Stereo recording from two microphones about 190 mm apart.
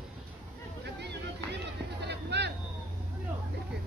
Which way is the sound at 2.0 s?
60° right (ahead or behind).